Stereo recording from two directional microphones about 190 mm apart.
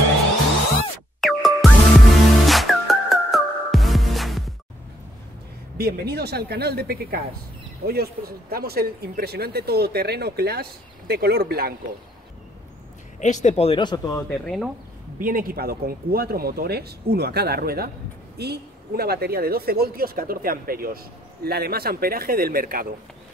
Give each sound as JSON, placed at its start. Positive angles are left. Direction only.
{"t": 1.2, "sound": "music", "side_deg": 0}
{"t": 5.8, "sound": "speech", "side_deg": -55}
{"t": 13.2, "sound": "speech", "side_deg": 40}
{"t": 14.4, "sound": "speech", "side_deg": 0}
{"t": 15.1, "sound": "speech", "side_deg": -50}